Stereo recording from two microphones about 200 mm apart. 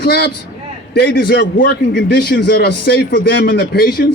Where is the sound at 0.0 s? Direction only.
55° left (ahead or behind).